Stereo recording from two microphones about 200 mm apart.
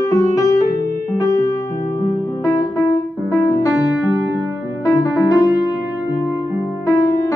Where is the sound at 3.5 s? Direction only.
15° left (ahead or behind).